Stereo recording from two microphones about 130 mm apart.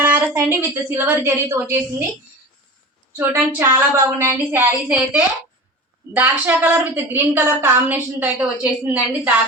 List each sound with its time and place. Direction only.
0.0 s a woman's voice: 15° right (ahead or behind)
3.2 s a woman's voice: 20° right (ahead or behind)